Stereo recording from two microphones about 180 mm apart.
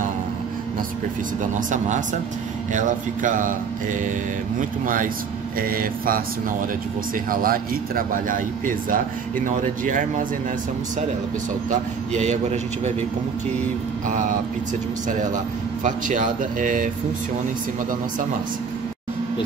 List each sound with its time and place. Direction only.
1.7 s a man's voice: 45° right (ahead or behind)
4.6 s a man's voice: 50° right (ahead or behind)
7.2 s a man's voice: 55° right (ahead or behind)
12.1 s a man's voice: 40° right (ahead or behind)
15.0 s a man's voice: 45° right (ahead or behind)